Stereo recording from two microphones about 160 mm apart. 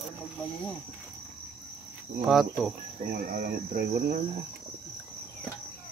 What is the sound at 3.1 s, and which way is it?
Speech, 75° right (ahead or behind).